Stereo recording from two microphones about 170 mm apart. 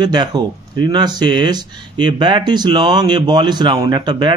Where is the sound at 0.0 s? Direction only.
25° right (ahead or behind).